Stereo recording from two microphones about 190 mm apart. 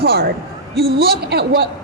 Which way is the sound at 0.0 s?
55° right (ahead or behind).